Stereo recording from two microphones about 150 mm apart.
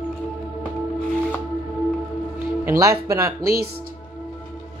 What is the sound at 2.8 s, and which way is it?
Speech, 20° right (ahead or behind).